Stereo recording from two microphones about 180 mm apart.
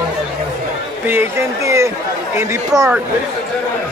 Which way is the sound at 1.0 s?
15° right (ahead or behind).